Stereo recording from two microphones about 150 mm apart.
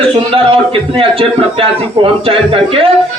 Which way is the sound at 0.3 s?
40° right (ahead or behind).